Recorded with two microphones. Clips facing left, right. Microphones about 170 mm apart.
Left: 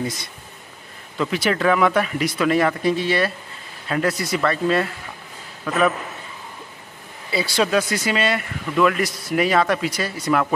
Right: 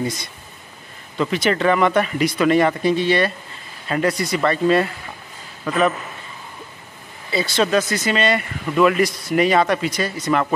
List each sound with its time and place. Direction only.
1.1 s speech: centre (ahead or behind)
7.2 s speech: 10° left (ahead or behind)